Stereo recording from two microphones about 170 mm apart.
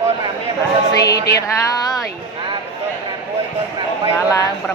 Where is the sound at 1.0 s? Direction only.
20° left (ahead or behind).